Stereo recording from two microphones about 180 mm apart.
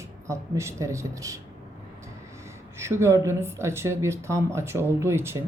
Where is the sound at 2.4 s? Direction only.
15° right (ahead or behind).